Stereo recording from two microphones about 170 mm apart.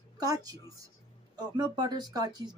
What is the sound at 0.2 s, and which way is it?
Speech, 20° right (ahead or behind).